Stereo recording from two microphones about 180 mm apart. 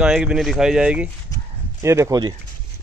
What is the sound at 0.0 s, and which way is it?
Speech, 5° right (ahead or behind).